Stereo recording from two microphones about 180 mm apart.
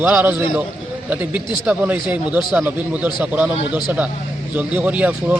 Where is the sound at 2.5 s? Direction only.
5° right (ahead or behind).